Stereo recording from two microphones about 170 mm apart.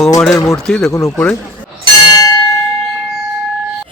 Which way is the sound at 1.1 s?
5° left (ahead or behind).